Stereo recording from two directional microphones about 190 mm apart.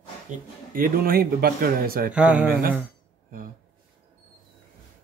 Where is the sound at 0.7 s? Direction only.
50° right (ahead or behind).